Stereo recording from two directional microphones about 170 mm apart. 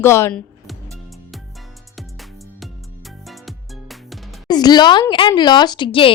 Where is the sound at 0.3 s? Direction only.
Centre (ahead or behind).